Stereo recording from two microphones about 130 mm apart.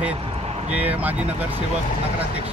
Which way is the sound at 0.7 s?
10° right (ahead or behind).